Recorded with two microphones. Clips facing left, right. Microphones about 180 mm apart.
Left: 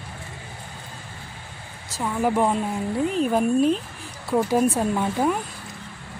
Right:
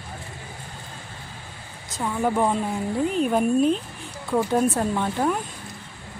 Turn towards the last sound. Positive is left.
turn(degrees=5)  # may be behind; listen again after turning